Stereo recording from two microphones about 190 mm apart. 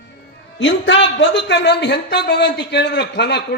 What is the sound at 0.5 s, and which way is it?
A man's voice, 70° left (ahead or behind).